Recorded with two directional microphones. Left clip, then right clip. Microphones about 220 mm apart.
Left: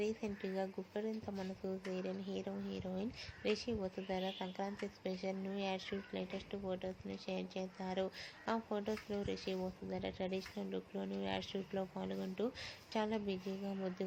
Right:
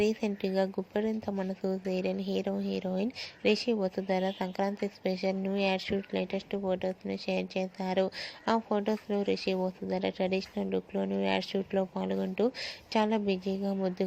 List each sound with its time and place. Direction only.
0.0 s speech: 35° right (ahead or behind)